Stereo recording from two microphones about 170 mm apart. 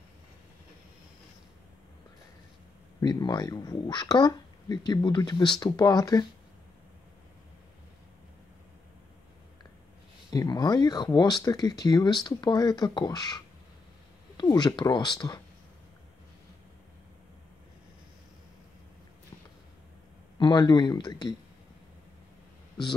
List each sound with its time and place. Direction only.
3.0 s speech: 25° left (ahead or behind)
10.3 s speech: 25° left (ahead or behind)
20.3 s speech: 25° left (ahead or behind)